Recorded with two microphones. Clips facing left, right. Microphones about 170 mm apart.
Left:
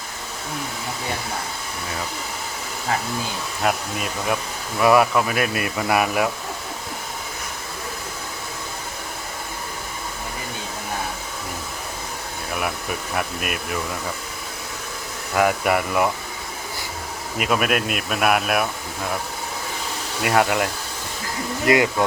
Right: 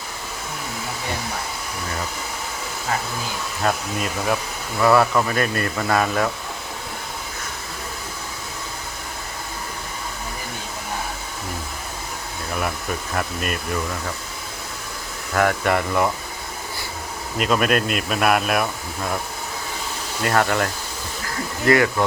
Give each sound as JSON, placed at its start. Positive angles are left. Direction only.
{"t": 3.6, "sound": "speech", "side_deg": 5}
{"t": 13.1, "sound": "speech", "side_deg": 10}
{"t": 15.4, "sound": "speech", "side_deg": 10}
{"t": 17.3, "sound": "speech", "side_deg": 10}
{"t": 20.2, "sound": "speech", "side_deg": 15}
{"t": 21.7, "sound": "speech", "side_deg": 15}